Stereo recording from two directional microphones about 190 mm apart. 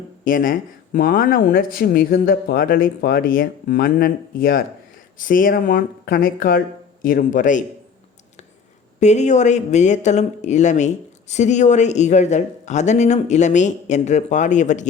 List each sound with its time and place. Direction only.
0.3 s speech: 45° left (ahead or behind)
9.0 s speech: 35° left (ahead or behind)